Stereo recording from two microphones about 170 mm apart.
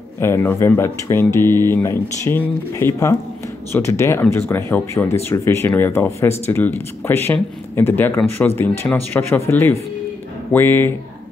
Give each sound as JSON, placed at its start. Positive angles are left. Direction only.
{"t": 0.2, "sound": "speech", "side_deg": 15}